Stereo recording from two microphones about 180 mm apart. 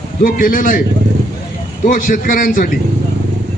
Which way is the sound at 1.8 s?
50° left (ahead or behind).